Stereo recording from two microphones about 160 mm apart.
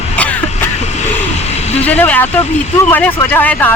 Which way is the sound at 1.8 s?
10° left (ahead or behind).